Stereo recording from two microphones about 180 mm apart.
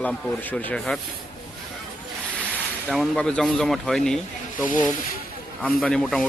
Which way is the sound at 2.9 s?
5° left (ahead or behind).